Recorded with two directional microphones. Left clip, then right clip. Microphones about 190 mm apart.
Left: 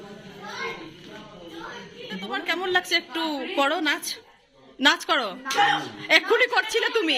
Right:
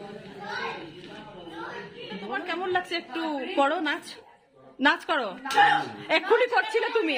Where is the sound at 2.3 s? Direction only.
Centre (ahead or behind).